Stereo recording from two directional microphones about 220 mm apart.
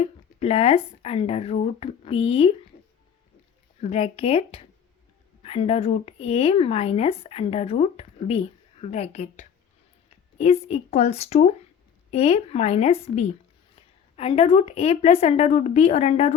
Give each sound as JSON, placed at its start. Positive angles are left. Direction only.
{"t": 0.0, "sound": "speech", "side_deg": 25}
{"t": 3.8, "sound": "speech", "side_deg": 25}